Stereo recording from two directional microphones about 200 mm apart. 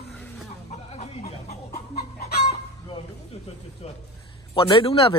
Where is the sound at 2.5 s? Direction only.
30° left (ahead or behind).